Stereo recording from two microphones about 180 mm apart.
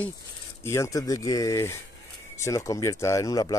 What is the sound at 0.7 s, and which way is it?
Speech, 15° left (ahead or behind).